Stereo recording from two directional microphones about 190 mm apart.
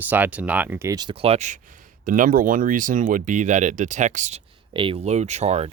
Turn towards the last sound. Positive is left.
turn(degrees=-35)  # may be behind; listen again after turning